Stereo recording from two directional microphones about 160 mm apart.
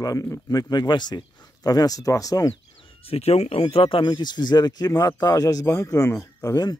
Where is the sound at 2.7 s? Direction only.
35° left (ahead or behind).